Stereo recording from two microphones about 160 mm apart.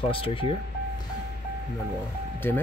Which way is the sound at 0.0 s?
35° left (ahead or behind).